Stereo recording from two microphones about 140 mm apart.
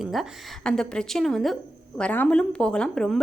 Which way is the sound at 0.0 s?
Centre (ahead or behind).